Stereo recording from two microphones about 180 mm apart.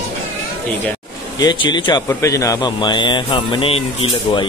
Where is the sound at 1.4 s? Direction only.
25° left (ahead or behind).